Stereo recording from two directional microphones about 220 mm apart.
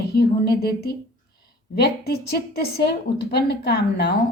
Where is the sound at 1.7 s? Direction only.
45° left (ahead or behind).